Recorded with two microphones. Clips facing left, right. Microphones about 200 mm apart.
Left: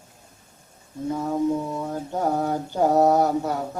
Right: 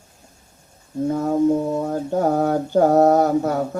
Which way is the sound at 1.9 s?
50° right (ahead or behind).